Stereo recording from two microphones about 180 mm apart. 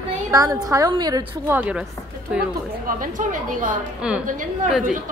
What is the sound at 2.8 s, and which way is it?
A woman's voice, 50° right (ahead or behind).